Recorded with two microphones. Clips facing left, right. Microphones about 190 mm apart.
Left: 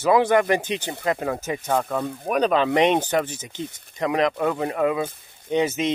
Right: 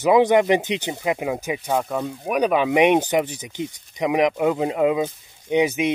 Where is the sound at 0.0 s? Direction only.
15° right (ahead or behind).